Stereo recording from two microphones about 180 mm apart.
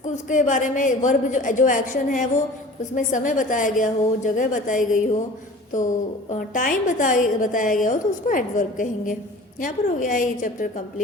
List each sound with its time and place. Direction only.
0.0 s a woman's voice: 45° left (ahead or behind)